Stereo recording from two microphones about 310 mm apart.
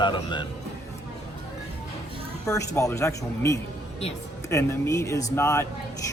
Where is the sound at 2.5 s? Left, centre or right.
Centre.